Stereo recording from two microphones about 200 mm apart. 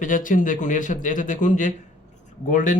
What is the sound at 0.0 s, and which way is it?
Speech, 40° left (ahead or behind).